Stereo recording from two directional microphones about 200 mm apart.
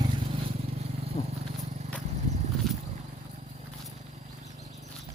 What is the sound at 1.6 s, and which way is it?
Horse, 35° right (ahead or behind).